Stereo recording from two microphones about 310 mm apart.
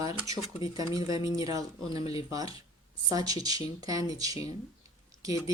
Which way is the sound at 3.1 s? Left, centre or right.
Centre.